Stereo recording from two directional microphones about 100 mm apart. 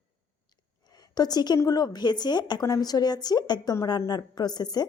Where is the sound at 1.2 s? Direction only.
45° left (ahead or behind).